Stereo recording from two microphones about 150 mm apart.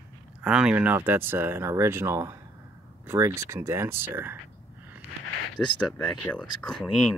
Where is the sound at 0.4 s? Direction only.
5° right (ahead or behind).